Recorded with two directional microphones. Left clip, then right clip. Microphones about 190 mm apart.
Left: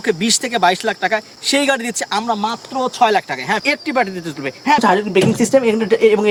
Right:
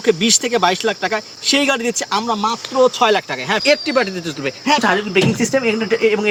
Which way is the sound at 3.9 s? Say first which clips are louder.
Even; 25° left (ahead or behind).